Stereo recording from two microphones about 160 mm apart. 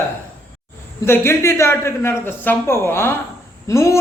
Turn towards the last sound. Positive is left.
turn(degrees=20)  # may be behind; listen again after turning